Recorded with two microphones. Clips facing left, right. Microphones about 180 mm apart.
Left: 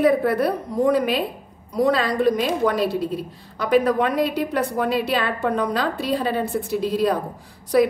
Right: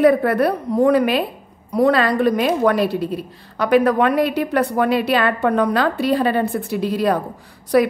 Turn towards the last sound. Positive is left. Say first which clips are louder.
# right 2 dB
turn(degrees=-65)  # may be behind; listen again after turning